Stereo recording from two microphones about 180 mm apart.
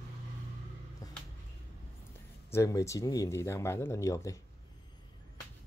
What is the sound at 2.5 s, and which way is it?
Speech, 15° left (ahead or behind).